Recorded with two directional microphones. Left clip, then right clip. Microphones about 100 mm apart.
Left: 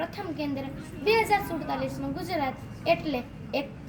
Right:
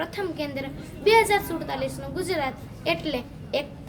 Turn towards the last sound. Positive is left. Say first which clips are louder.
# right 3 dB
turn(degrees=-35)  # may be behind; listen again after turning